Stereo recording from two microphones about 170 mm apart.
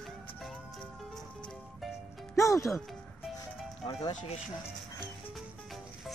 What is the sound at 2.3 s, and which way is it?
Speech, 20° left (ahead or behind).